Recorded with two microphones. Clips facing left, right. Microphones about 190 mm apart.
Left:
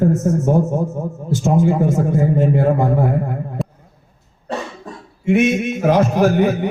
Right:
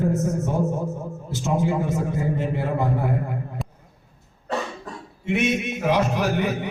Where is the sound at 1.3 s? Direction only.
50° left (ahead or behind).